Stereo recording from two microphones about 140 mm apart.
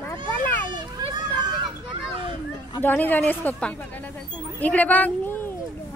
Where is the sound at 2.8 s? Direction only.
15° left (ahead or behind).